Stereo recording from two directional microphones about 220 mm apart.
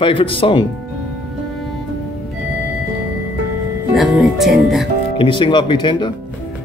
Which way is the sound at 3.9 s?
Centre (ahead or behind).